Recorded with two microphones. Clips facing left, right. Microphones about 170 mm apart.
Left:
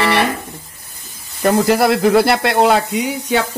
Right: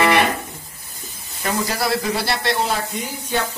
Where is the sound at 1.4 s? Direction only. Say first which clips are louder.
Left 10 dB; 65° left (ahead or behind).